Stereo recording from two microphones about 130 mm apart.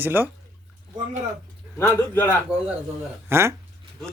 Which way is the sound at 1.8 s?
15° left (ahead or behind).